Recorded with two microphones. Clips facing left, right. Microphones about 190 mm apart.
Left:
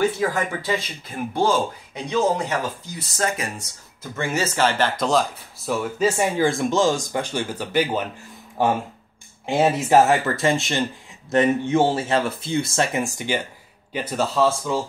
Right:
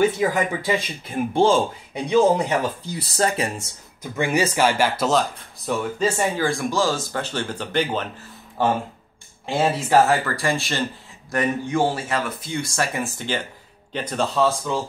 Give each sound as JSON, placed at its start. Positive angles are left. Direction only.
{"t": 0.2, "sound": "speech", "side_deg": -15}
{"t": 1.3, "sound": "speech", "side_deg": -25}
{"t": 2.0, "sound": "speech", "side_deg": -15}
{"t": 3.0, "sound": "speech", "side_deg": -35}
{"t": 4.0, "sound": "speech", "side_deg": -15}
{"t": 5.7, "sound": "speech", "side_deg": 10}
{"t": 6.3, "sound": "speech", "side_deg": 20}